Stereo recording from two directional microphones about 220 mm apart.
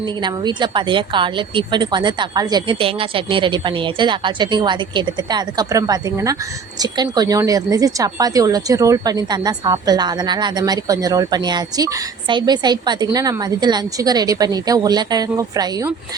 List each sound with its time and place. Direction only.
0.0 s a woman's voice: 20° right (ahead or behind)